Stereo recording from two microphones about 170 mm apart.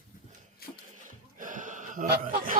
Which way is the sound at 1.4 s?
50° right (ahead or behind).